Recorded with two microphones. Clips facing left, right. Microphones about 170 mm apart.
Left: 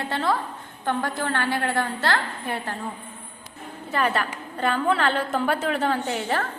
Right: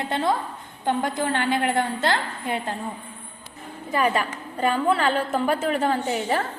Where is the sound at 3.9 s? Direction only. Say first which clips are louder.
Right 2 dB; 10° right (ahead or behind).